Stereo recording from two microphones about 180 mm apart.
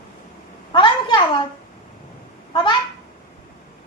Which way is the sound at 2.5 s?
25° left (ahead or behind).